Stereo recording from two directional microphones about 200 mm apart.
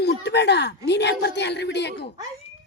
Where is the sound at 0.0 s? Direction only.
55° left (ahead or behind).